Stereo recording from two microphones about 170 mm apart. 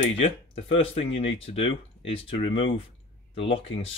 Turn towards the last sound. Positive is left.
turn(degrees=35)  # may be behind; listen again after turning